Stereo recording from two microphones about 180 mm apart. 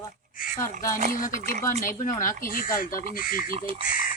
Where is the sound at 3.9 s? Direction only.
50° left (ahead or behind).